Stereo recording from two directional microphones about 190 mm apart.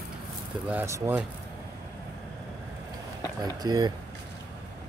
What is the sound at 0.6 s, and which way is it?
Speech, 10° right (ahead or behind).